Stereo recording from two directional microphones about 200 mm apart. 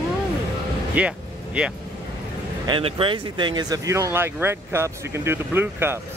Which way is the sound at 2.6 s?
25° right (ahead or behind).